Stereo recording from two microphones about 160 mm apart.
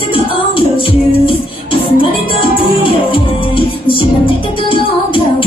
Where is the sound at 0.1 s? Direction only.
35° left (ahead or behind).